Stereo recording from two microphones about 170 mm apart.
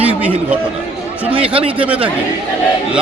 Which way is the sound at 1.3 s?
30° right (ahead or behind).